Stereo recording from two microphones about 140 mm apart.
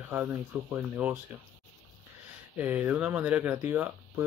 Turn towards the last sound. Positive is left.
turn(degrees=-15)  # may be behind; listen again after turning